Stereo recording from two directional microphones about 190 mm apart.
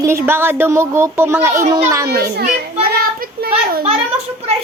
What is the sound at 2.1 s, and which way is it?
Children playing, 55° right (ahead or behind).